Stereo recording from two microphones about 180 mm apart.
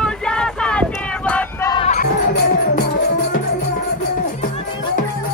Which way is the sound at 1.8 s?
45° left (ahead or behind).